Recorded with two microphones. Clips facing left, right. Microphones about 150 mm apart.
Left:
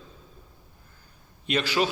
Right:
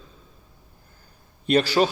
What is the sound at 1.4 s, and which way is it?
Speech, 35° right (ahead or behind).